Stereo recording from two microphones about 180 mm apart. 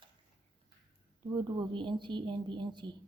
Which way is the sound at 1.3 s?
25° right (ahead or behind).